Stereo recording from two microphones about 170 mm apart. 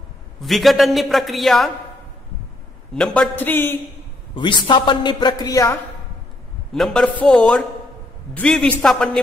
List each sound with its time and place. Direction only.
0.4 s a man's voice: centre (ahead or behind)
2.9 s a man's voice: 5° left (ahead or behind)
4.4 s a man's voice: 30° left (ahead or behind)
6.7 s a man's voice: 5° left (ahead or behind)